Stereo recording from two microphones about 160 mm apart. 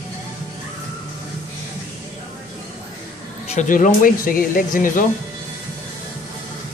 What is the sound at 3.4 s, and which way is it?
Speech, 50° left (ahead or behind).